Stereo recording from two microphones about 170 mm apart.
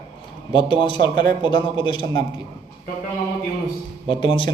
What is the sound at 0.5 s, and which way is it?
A man's voice, 30° left (ahead or behind).